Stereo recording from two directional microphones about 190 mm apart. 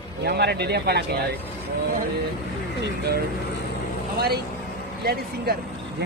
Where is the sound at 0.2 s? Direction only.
60° right (ahead or behind).